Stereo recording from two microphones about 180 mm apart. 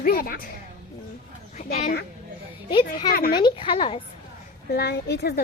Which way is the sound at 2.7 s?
25° left (ahead or behind).